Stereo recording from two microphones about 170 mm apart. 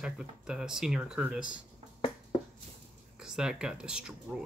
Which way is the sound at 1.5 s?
40° left (ahead or behind).